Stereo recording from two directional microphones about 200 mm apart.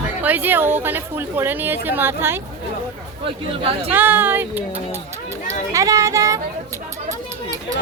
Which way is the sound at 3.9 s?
10° right (ahead or behind).